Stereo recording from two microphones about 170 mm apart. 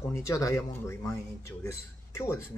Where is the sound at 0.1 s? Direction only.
20° left (ahead or behind).